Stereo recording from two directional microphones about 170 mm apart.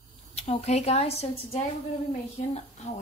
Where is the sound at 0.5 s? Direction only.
40° left (ahead or behind).